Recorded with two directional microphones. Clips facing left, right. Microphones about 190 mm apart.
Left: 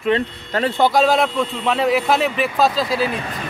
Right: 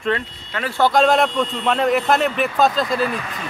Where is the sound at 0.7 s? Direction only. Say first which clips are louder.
Left 1 dB; 15° left (ahead or behind).